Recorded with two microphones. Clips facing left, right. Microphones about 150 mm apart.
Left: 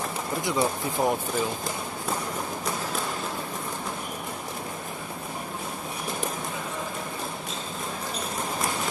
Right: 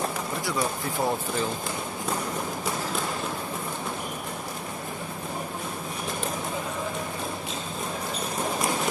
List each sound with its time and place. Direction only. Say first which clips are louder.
0.4 s speech: left 4 dB; 20° left (ahead or behind)